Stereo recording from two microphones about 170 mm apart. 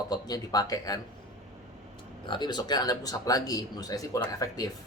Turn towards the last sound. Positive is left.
turn(degrees=20)  # may be behind; listen again after turning